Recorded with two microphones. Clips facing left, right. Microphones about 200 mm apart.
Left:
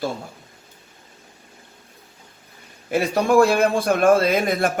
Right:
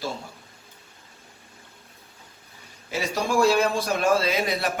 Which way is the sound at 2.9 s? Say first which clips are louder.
Left 8 dB; 55° left (ahead or behind).